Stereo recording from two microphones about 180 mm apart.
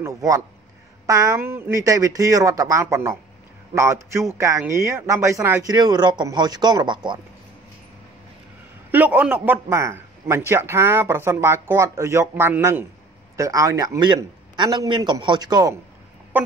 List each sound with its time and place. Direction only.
0.0 s a man's voice: 20° right (ahead or behind)
8.9 s a man's voice: 10° right (ahead or behind)